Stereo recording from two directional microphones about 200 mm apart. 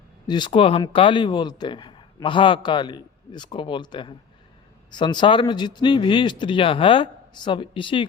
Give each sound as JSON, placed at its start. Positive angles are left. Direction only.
{"t": 0.3, "sound": "speech", "side_deg": 20}